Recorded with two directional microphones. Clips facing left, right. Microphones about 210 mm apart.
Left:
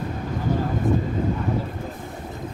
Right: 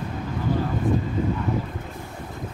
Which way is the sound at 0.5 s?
45° left (ahead or behind).